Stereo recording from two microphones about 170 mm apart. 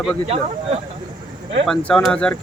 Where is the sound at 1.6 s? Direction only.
5° left (ahead or behind).